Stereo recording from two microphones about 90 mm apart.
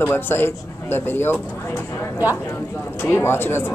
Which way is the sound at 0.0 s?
25° left (ahead or behind).